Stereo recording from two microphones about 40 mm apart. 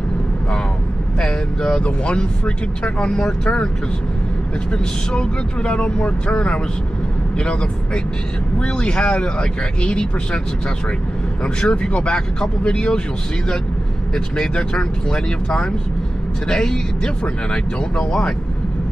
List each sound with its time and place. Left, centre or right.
1.2 s speech: centre
4.7 s speech: left
11.4 s speech: left
14.1 s speech: centre